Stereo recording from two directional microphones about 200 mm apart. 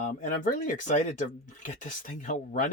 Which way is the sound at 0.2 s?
40° left (ahead or behind).